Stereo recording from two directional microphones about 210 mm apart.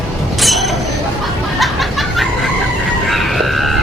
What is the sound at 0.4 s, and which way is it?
Creak, centre (ahead or behind).